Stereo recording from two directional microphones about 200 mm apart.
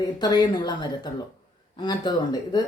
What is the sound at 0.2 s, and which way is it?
Speech, 20° left (ahead or behind).